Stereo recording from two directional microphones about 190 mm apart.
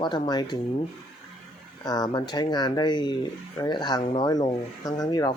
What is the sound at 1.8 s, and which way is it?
Speech, 20° left (ahead or behind).